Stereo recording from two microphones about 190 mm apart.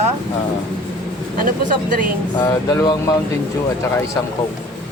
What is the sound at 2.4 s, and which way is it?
Speech, 20° left (ahead or behind).